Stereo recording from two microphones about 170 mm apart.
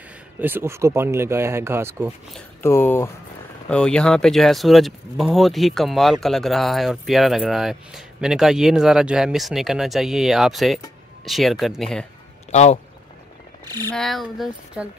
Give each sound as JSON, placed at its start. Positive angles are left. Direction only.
{"t": 0.4, "sound": "speech", "side_deg": -15}
{"t": 2.6, "sound": "speech", "side_deg": 15}
{"t": 12.4, "sound": "a sound", "side_deg": 40}
{"t": 13.8, "sound": "speech", "side_deg": 5}